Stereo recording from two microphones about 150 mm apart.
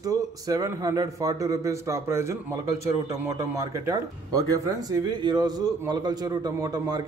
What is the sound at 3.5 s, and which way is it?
A man's voice, 25° right (ahead or behind).